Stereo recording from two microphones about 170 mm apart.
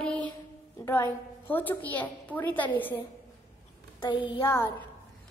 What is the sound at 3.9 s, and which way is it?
Speech, 30° left (ahead or behind).